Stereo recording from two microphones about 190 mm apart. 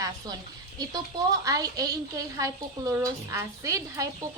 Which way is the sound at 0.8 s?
20° right (ahead or behind).